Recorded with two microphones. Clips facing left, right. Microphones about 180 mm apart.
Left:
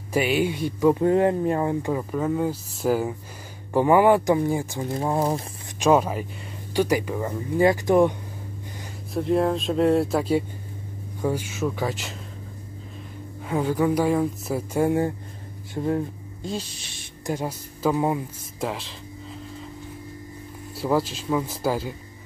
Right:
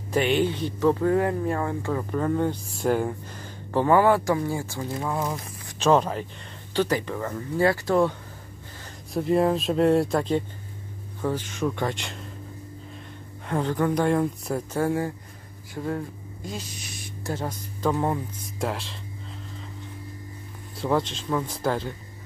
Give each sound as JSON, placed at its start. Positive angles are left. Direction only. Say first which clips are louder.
{"t": 0.1, "sound": "speech", "louder": "even", "side_deg": 10}
{"t": 4.9, "sound": "speech", "louder": "left 5 dB", "side_deg": 35}
{"t": 5.8, "sound": "speech", "louder": "left 1 dB", "side_deg": 10}
{"t": 9.1, "sound": "speech", "louder": "even", "side_deg": 0}
{"t": 13.5, "sound": "speech", "louder": "left 2 dB", "side_deg": 5}
{"t": 14.8, "sound": "speech", "louder": "left 5 dB", "side_deg": 20}
{"t": 17.3, "sound": "speech", "louder": "left 3 dB", "side_deg": 10}
{"t": 20.7, "sound": "speech", "louder": "left 1 dB", "side_deg": 5}